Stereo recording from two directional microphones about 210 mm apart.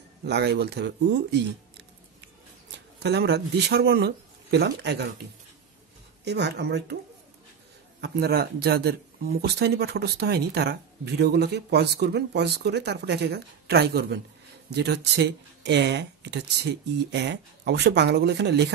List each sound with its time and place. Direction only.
0.2 s speech: 50° right (ahead or behind)
6.2 s speech: 55° right (ahead or behind)
8.0 s speech: 50° right (ahead or behind)